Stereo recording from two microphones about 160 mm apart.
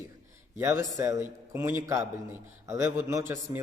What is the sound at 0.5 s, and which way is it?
Speech, 15° right (ahead or behind).